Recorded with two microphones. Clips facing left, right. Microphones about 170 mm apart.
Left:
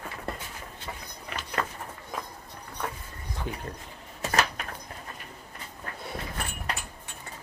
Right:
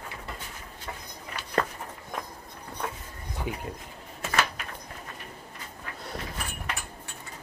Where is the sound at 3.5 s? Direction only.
10° right (ahead or behind).